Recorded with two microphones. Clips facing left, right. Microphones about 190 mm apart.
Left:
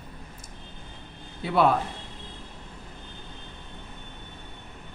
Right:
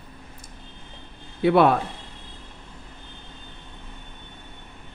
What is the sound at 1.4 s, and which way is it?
Speech, 65° right (ahead or behind).